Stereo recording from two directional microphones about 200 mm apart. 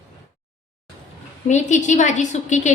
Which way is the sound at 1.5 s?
40° left (ahead or behind).